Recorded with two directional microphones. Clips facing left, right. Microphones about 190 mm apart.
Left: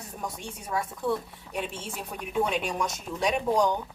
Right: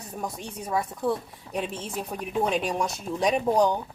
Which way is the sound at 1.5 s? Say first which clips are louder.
Right 3 dB; 35° right (ahead or behind).